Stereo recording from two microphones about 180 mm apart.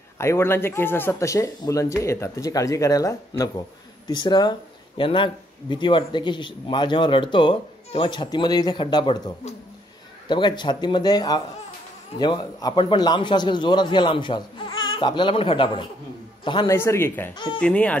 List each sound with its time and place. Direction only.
0.2 s speech: 15° left (ahead or behind)
16.7 s speech: 15° left (ahead or behind)